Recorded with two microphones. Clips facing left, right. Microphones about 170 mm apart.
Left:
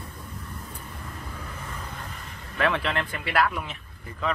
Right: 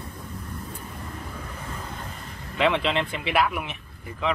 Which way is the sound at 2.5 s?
20° right (ahead or behind).